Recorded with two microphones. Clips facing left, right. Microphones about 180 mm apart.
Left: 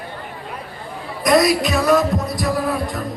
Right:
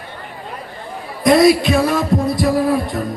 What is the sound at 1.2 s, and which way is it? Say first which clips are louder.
Heart sounds: right 4 dB; 30° right (ahead or behind).